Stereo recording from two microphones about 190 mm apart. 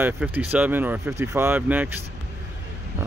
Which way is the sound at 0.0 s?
10° right (ahead or behind).